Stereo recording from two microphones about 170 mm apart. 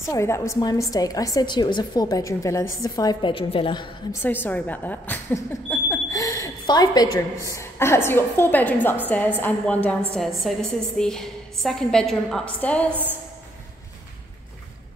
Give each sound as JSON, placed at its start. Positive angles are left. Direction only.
{"t": 0.1, "sound": "a woman's voice", "side_deg": 15}
{"t": 4.1, "sound": "a woman's voice", "side_deg": 10}